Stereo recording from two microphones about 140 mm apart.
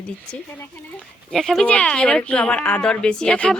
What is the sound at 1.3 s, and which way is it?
Speech, centre (ahead or behind).